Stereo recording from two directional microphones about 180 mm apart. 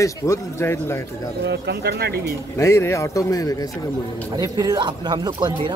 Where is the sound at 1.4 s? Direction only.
65° right (ahead or behind).